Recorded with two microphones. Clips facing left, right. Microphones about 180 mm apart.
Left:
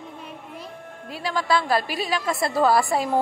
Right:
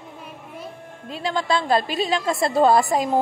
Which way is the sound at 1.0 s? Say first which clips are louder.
Right 1 dB; 25° right (ahead or behind).